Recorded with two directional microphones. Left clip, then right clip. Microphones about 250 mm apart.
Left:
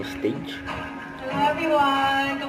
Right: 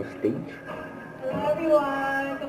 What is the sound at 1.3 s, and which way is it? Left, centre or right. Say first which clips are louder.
Music: left 1 dB; centre.